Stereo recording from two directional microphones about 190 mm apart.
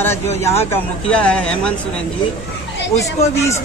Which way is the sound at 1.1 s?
5° left (ahead or behind).